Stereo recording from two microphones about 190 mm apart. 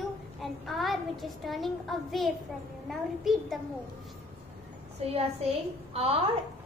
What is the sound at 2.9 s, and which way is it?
Speech, centre (ahead or behind).